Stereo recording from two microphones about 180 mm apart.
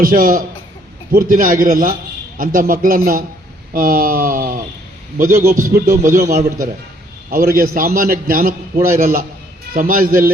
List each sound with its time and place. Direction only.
0.0 s a man's voice: 50° right (ahead or behind)
7.3 s a man's voice: 50° right (ahead or behind)